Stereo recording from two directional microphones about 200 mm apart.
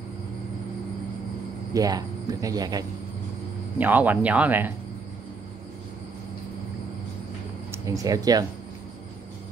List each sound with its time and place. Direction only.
1.7 s speech: 20° right (ahead or behind)
3.7 s speech: 10° right (ahead or behind)
7.7 s speech: 15° right (ahead or behind)